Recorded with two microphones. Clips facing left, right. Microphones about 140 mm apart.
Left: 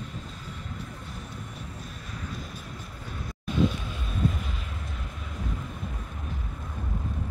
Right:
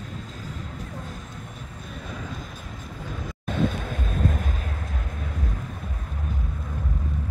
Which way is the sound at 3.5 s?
55° right (ahead or behind).